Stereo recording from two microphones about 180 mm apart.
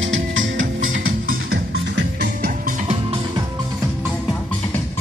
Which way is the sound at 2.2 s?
55° right (ahead or behind).